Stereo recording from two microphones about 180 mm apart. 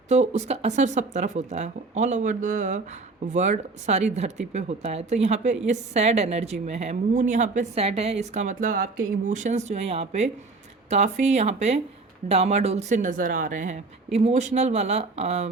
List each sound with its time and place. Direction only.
0.1 s a woman's voice: 40° right (ahead or behind)